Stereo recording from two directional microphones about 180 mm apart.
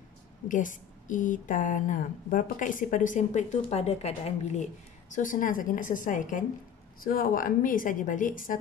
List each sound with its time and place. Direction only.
0.5 s a woman's voice: 45° left (ahead or behind)
5.1 s a woman's voice: 50° left (ahead or behind)